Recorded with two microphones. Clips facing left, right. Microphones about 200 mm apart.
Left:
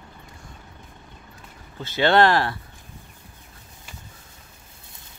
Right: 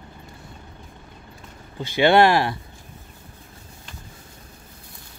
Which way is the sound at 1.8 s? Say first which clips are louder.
Right 2 dB; 15° right (ahead or behind).